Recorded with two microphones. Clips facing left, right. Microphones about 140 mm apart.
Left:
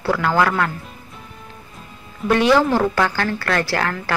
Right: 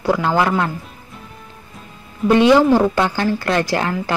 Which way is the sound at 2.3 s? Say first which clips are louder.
Right 4 dB; 20° right (ahead or behind).